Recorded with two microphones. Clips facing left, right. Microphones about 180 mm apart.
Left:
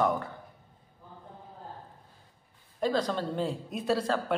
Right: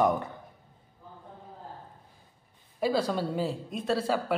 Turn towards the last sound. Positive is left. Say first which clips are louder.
# even
turn(degrees=-5)  # may be behind; listen again after turning